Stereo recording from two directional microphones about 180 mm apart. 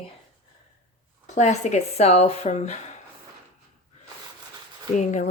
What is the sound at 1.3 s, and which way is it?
A woman's voice, 40° left (ahead or behind).